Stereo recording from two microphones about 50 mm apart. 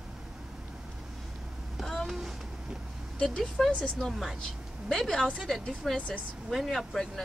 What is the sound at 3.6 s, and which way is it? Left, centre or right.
Speech, centre.